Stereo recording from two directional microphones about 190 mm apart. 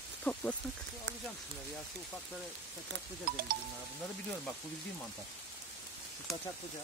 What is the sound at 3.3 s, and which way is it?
Speech, 50° right (ahead or behind).